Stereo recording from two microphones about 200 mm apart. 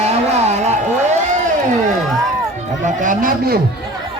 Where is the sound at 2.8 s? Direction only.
40° right (ahead or behind).